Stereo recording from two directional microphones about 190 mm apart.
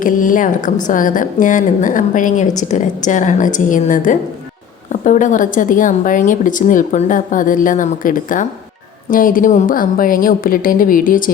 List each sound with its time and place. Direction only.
0.0 s a woman's voice: 45° left (ahead or behind)